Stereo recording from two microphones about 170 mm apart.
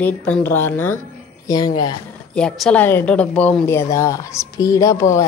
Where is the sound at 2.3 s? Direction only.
5° left (ahead or behind).